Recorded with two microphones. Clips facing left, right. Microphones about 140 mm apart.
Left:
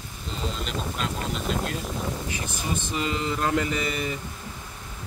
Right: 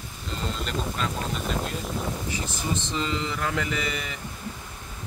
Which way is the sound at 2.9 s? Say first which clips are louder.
Left 1 dB; 15° left (ahead or behind).